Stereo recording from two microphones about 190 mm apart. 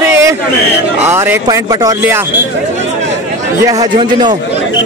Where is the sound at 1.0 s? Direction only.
10° right (ahead or behind).